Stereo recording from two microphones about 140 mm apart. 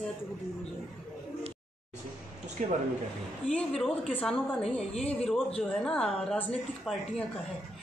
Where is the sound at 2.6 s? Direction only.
60° right (ahead or behind).